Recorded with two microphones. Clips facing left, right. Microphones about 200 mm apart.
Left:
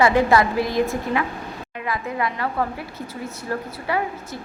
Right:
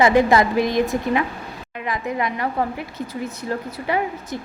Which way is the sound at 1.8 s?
20° right (ahead or behind).